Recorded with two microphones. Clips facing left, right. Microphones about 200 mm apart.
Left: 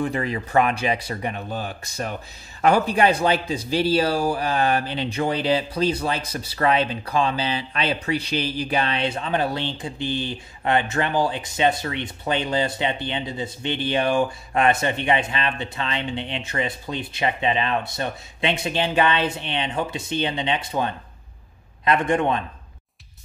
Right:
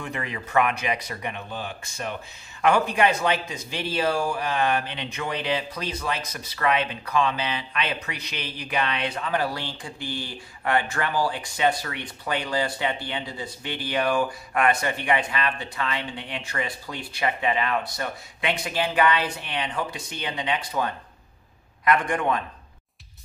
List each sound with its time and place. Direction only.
0.0 s a man's voice: 35° left (ahead or behind)